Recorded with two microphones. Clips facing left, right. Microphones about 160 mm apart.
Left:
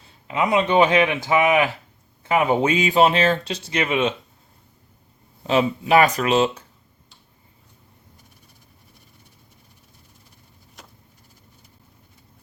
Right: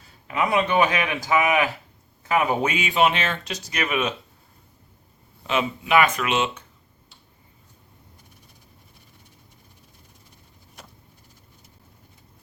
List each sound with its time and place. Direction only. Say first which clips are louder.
0.0 s speech: left 2 dB; 20° left (ahead or behind)
5.4 s speech: left 5 dB; 35° left (ahead or behind)